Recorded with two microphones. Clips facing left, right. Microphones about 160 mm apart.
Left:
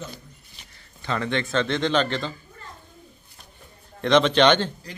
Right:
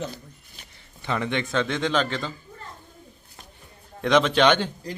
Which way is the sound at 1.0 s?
15° right (ahead or behind).